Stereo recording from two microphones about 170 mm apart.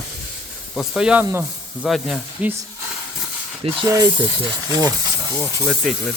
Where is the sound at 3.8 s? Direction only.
20° right (ahead or behind).